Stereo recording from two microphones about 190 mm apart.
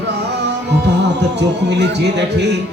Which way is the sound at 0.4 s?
65° right (ahead or behind).